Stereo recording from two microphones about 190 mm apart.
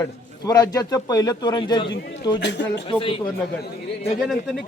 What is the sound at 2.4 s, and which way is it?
Speech, 65° left (ahead or behind).